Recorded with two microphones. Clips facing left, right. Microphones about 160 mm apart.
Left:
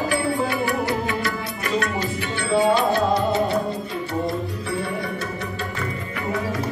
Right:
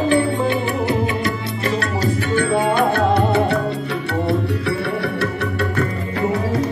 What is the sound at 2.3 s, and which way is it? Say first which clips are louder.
Music: right 1 dB; 55° right (ahead or behind).